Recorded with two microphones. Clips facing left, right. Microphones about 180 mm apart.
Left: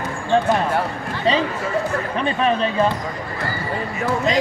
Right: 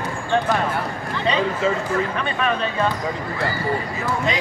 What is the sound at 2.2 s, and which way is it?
Speech, 30° left (ahead or behind).